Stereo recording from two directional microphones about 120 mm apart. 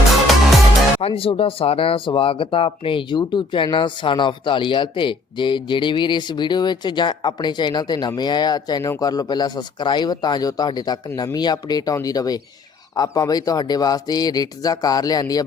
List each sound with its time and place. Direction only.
1.0 s speech: 50° left (ahead or behind); by 15.4 s 30° left (ahead or behind)